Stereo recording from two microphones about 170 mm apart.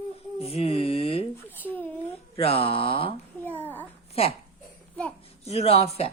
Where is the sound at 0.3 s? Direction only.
35° left (ahead or behind).